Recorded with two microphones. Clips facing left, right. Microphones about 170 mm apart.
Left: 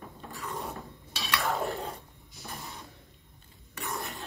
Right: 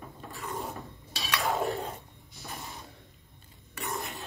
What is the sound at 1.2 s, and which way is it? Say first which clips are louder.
Cutlery: even; centre (ahead or behind).